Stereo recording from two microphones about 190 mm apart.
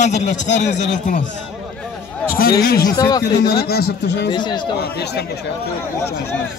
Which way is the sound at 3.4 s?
55° left (ahead or behind).